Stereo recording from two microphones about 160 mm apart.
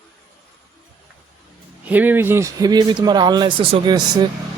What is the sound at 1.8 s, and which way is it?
A man's voice, 10° right (ahead or behind).